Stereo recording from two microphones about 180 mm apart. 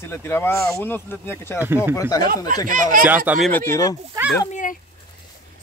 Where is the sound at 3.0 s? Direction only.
10° right (ahead or behind).